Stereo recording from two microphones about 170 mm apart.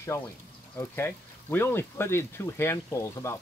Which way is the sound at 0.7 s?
15° left (ahead or behind).